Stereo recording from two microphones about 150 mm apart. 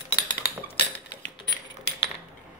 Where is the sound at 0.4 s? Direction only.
90° left.